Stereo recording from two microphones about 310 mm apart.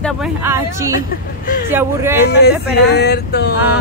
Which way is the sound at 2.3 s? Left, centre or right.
Left.